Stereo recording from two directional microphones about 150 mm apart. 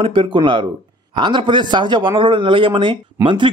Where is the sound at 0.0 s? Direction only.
35° right (ahead or behind).